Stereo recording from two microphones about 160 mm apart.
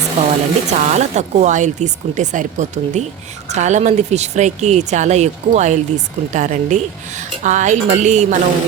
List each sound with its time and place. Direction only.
0.2 s speech: 45° right (ahead or behind)